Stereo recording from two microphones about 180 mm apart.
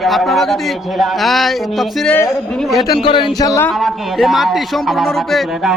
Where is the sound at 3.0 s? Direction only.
30° left (ahead or behind).